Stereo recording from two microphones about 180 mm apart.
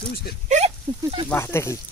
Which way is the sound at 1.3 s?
15° left (ahead or behind).